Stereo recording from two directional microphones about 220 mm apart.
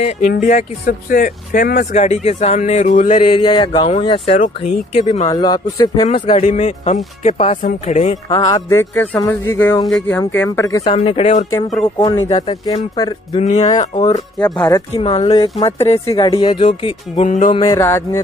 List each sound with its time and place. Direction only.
0.0 s speech: 30° left (ahead or behind)
3.1 s speech: 20° left (ahead or behind)
5.3 s speech: 20° left (ahead or behind)
8.3 s speech: 20° left (ahead or behind)
11.0 s speech: 25° left (ahead or behind)
13.4 s speech: 30° left (ahead or behind)
14.5 s speech: 20° left (ahead or behind)
17.6 s speech: 10° left (ahead or behind)